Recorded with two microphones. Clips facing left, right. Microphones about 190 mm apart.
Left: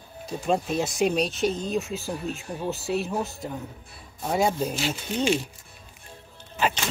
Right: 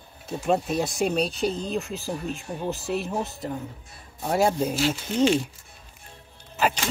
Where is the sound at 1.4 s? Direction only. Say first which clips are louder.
Left 1 dB; 35° right (ahead or behind).